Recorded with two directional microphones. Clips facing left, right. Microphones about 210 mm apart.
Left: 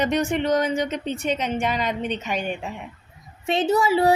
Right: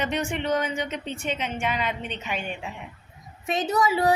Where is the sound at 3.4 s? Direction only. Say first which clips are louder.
Left 4 dB; 30° left (ahead or behind).